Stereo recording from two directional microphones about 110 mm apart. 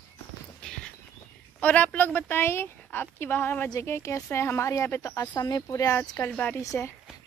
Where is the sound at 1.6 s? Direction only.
10° left (ahead or behind).